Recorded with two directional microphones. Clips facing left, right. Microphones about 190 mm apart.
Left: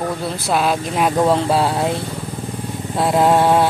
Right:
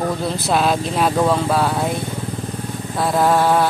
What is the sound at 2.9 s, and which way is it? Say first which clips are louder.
Vehicle: left 2 dB; 20° left (ahead or behind).